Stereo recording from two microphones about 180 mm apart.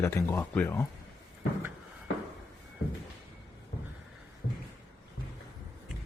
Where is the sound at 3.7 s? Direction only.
60° left (ahead or behind).